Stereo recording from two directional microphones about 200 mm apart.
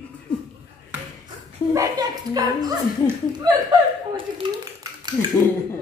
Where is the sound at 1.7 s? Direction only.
20° right (ahead or behind).